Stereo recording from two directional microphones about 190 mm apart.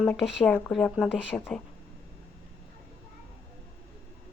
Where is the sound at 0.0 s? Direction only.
Centre (ahead or behind).